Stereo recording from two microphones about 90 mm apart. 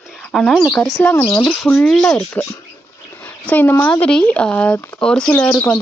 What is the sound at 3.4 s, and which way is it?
Speech, 20° left (ahead or behind).